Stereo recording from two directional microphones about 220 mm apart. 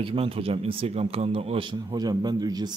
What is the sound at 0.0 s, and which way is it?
Speech, 25° right (ahead or behind).